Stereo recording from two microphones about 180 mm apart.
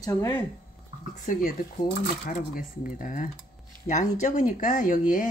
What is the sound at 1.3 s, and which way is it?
Speech, 50° left (ahead or behind).